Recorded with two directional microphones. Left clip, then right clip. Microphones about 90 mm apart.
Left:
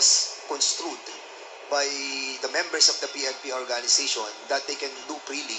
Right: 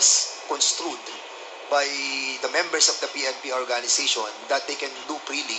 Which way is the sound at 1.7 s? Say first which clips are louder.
Right 3 dB; 25° right (ahead or behind).